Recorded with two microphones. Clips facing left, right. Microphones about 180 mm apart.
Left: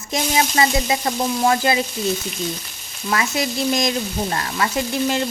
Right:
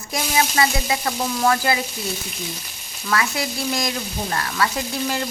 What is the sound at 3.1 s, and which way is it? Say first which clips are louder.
Frying: left 2 dB; 20° left (ahead or behind).